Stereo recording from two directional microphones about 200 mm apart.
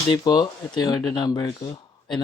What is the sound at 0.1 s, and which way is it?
Speech, 20° left (ahead or behind).